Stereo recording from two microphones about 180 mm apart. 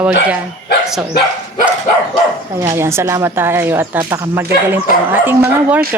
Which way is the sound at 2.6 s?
15° right (ahead or behind).